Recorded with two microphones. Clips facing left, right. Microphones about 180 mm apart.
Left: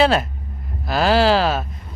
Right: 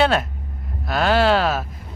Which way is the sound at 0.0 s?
Centre (ahead or behind).